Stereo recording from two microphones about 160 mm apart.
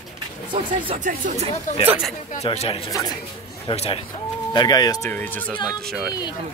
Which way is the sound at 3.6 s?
35° left (ahead or behind).